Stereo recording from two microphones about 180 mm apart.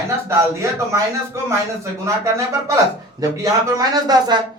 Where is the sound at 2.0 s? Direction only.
15° right (ahead or behind).